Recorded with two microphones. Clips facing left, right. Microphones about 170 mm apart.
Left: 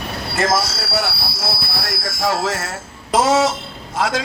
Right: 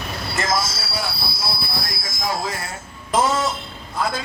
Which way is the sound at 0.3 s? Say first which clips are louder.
Left 5 dB; 70° left (ahead or behind).